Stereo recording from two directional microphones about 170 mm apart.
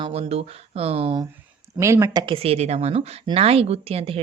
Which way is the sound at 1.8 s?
15° right (ahead or behind).